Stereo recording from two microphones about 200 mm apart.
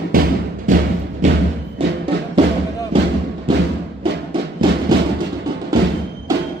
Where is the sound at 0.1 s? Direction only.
45° right (ahead or behind).